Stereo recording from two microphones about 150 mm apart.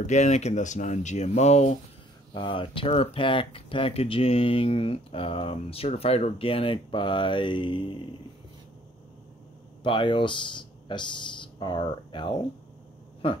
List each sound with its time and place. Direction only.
0.0 s speech: 50° left (ahead or behind)
2.3 s speech: 35° left (ahead or behind)
9.8 s speech: 30° left (ahead or behind)